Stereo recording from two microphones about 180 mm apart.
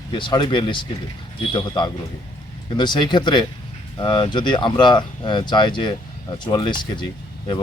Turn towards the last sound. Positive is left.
turn(degrees=25)  # may be behind; listen again after turning